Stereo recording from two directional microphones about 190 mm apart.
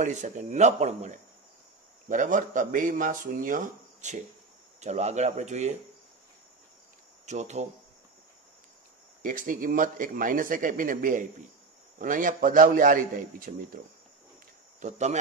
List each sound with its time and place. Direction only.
0.0 s speech: 40° right (ahead or behind)
7.2 s speech: 35° right (ahead or behind)
9.2 s speech: 45° right (ahead or behind)
14.8 s speech: 40° right (ahead or behind)